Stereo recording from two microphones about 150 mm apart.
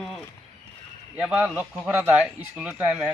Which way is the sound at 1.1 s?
5° right (ahead or behind).